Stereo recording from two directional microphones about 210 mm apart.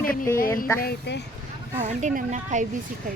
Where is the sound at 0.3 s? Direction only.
40° left (ahead or behind).